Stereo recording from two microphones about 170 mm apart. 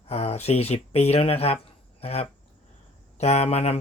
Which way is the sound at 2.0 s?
35° left (ahead or behind).